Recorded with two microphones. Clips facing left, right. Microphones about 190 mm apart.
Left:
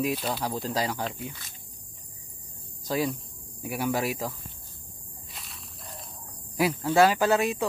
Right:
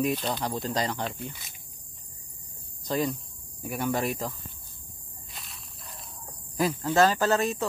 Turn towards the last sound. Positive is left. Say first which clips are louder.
# left 1 dB
turn(degrees=10)  # may be behind; listen again after turning